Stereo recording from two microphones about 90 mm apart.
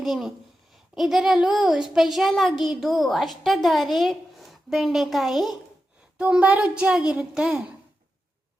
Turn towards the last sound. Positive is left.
turn(degrees=-10)  # may be behind; listen again after turning